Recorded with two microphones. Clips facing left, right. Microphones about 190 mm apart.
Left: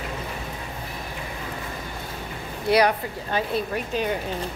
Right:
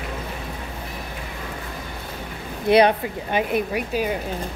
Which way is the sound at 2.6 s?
20° right (ahead or behind).